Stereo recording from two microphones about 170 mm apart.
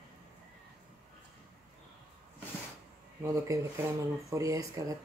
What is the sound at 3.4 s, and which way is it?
A woman's voice, 20° right (ahead or behind).